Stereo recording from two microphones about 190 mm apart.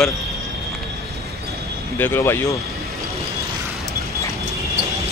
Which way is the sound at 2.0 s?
10° left (ahead or behind).